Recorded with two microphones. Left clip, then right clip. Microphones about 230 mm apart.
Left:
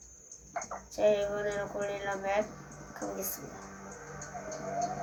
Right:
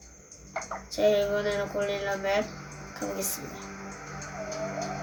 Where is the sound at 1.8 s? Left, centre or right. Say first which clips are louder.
Right 5 dB; right.